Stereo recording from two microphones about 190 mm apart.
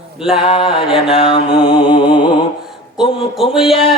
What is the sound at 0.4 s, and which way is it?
Mantra, 25° left (ahead or behind).